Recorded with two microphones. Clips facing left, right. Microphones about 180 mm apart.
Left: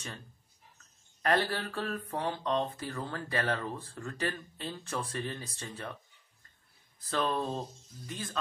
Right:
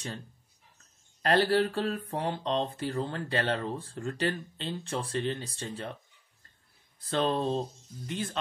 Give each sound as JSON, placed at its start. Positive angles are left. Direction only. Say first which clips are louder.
{"t": 1.5, "sound": "speech", "louder": "right 9 dB", "side_deg": -30}
{"t": 7.1, "sound": "speech", "louder": "right 4 dB", "side_deg": -30}